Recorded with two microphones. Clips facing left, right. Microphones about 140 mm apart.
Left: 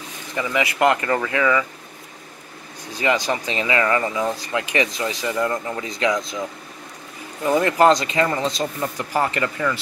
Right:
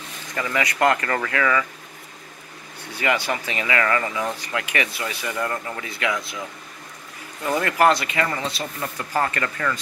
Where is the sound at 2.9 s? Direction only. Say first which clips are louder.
Left 2 dB; 15° left (ahead or behind).